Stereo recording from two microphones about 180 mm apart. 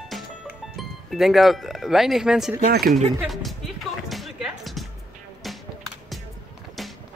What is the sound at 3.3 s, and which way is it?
Music, centre (ahead or behind).